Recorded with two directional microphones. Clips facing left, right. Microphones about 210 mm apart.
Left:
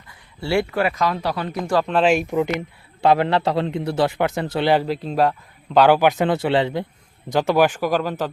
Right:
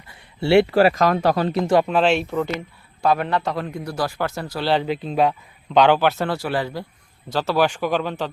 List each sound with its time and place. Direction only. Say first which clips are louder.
0.1 s a sound: right 6 dB; 25° right (ahead or behind)
0.7 s speech: right 5 dB; 35° right (ahead or behind)
1.6 s speech: right 2 dB; 20° right (ahead or behind)
1.9 s a man's voice: left 1 dB; 5° left (ahead or behind)
3.1 s a man's voice: left 3 dB; 30° left (ahead or behind)
4.7 s a man's voice: right 1 dB; 5° left (ahead or behind)